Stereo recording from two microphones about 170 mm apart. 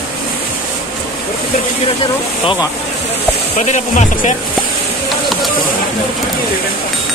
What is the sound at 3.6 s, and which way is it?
Speech, 45° left (ahead or behind).